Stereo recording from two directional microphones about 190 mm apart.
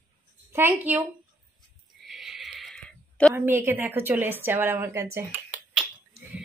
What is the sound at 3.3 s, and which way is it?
A woman's voice, 10° right (ahead or behind).